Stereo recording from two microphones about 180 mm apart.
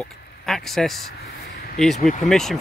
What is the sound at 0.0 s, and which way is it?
Speech, centre (ahead or behind).